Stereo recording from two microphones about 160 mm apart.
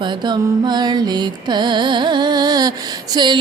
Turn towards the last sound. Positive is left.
turn(degrees=-30)  # may be behind; listen again after turning